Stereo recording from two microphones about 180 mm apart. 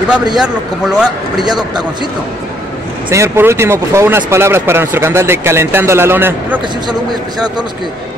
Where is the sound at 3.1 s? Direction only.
15° right (ahead or behind).